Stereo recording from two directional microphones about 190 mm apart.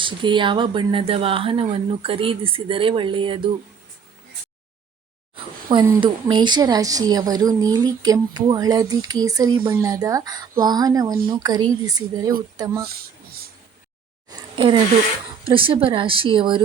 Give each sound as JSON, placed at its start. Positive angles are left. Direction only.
{"t": 0.0, "sound": "a woman's voice", "side_deg": -25}
{"t": 6.0, "sound": "a woman's voice", "side_deg": -25}
{"t": 12.8, "sound": "speech", "side_deg": -55}
{"t": 14.3, "sound": "a sound", "side_deg": -25}
{"t": 15.4, "sound": "a woman's voice", "side_deg": -25}